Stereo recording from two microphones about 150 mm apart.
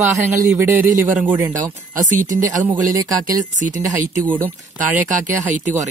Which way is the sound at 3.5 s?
55° right (ahead or behind).